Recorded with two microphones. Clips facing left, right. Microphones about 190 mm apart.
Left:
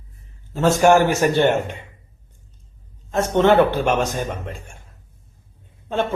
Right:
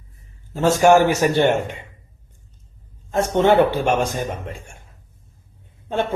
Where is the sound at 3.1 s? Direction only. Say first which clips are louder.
Even; 10° right (ahead or behind).